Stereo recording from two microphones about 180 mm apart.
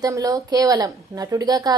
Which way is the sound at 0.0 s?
20° right (ahead or behind).